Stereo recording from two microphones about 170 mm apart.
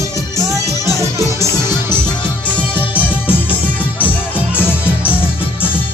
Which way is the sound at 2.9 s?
10° left (ahead or behind).